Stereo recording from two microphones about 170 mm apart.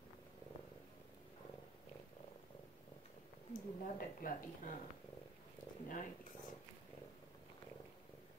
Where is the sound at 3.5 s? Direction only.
55° left (ahead or behind).